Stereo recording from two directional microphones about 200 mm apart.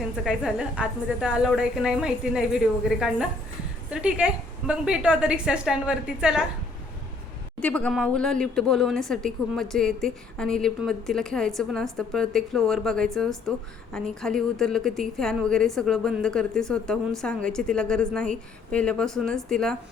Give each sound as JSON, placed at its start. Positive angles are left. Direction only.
{"t": 0.3, "sound": "a woman's voice", "side_deg": -5}
{"t": 7.6, "sound": "a woman's voice", "side_deg": 5}